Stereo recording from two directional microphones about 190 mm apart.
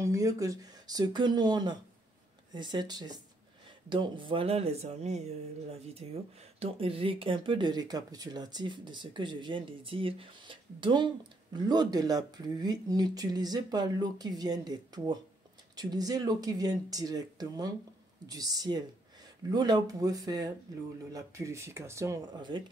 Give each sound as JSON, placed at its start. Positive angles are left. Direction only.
{"t": 0.0, "sound": "speech", "side_deg": -15}